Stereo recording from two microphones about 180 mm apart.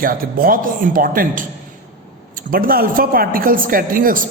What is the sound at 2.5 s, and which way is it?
Speech, 55° right (ahead or behind).